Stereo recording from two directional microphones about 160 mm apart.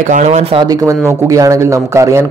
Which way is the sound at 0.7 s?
20° right (ahead or behind).